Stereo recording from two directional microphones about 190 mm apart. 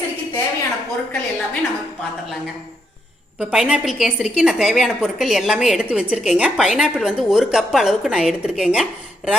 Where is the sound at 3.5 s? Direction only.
Centre (ahead or behind).